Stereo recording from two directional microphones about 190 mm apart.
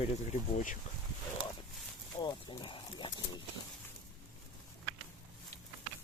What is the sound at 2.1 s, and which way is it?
Wild animals, 25° left (ahead or behind).